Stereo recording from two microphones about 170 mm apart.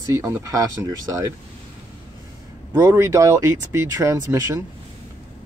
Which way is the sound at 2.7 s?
15° right (ahead or behind).